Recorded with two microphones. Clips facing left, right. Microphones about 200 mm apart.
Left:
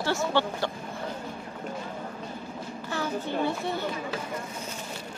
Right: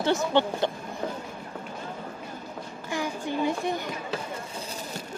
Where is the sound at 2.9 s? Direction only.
15° right (ahead or behind).